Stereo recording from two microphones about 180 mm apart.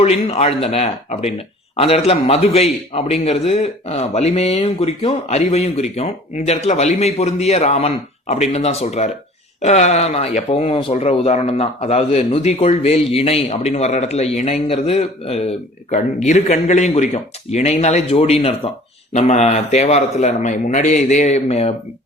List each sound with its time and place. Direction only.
0.0 s speech: 35° left (ahead or behind)